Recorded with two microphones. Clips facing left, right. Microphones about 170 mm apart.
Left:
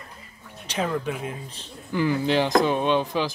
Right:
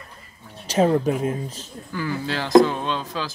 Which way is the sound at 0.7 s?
40° right (ahead or behind).